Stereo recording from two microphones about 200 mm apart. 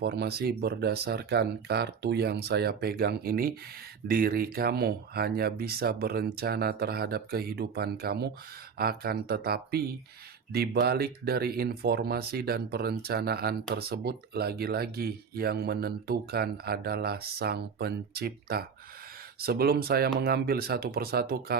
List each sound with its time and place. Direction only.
0.0 s speech: 55° right (ahead or behind)